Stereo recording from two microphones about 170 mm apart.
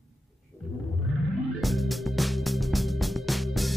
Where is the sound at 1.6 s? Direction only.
Centre (ahead or behind).